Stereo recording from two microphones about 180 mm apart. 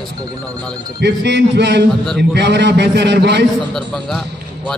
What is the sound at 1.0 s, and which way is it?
A man's voice, 70° right (ahead or behind).